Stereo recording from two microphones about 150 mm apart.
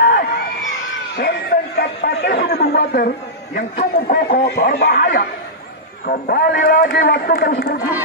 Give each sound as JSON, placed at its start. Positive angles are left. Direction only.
{"t": 0.0, "sound": "crowd", "side_deg": 90}
{"t": 1.1, "sound": "a man's voice", "side_deg": 90}